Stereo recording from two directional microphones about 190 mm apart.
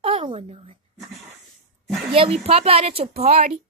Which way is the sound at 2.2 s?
30° right (ahead or behind).